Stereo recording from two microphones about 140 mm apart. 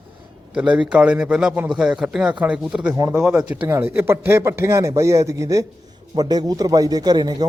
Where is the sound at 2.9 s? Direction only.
25° right (ahead or behind).